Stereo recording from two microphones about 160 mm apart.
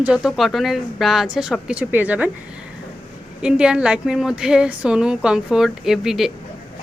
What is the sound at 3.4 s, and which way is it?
A woman's voice, 5° right (ahead or behind).